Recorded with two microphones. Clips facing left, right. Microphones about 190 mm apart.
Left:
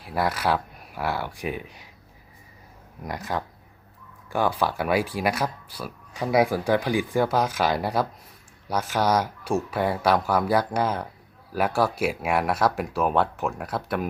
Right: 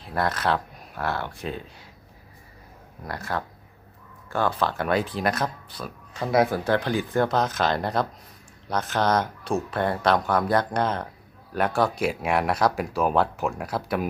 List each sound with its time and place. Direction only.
0.0 s speech: 10° left (ahead or behind)
3.0 s speech: 15° left (ahead or behind); by 14.1 s centre (ahead or behind)